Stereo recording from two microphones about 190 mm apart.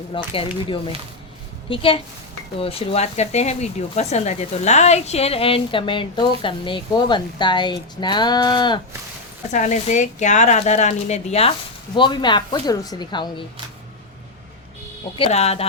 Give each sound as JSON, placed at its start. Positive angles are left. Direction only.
{"t": 0.1, "sound": "speech", "side_deg": 25}
{"t": 9.5, "sound": "speech", "side_deg": 40}
{"t": 15.2, "sound": "speech", "side_deg": 35}